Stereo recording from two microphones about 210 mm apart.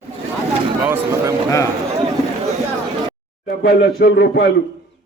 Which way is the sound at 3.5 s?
50° left (ahead or behind).